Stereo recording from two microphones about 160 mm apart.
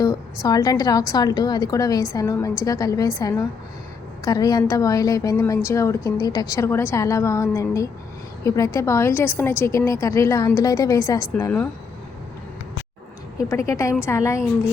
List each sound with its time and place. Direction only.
0.4 s a woman's voice: 25° left (ahead or behind)
13.5 s a woman's voice: 20° left (ahead or behind)